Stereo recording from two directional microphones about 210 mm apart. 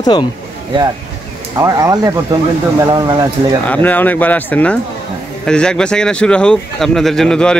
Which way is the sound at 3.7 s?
10° left (ahead or behind).